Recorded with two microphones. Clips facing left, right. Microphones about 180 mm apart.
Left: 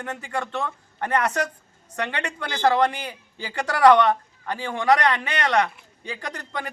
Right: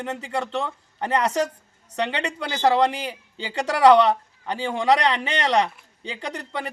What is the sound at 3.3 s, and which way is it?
Speech, 25° right (ahead or behind).